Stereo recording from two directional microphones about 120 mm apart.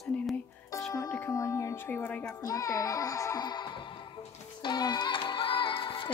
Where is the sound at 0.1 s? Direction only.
10° left (ahead or behind).